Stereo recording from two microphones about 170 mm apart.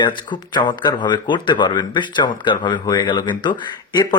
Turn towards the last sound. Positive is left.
turn(degrees=25)  # may be behind; listen again after turning